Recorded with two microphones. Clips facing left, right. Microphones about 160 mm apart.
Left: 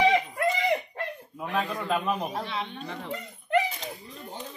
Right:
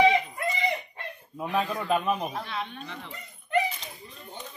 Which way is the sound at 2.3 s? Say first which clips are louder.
Left 2 dB; 25° left (ahead or behind).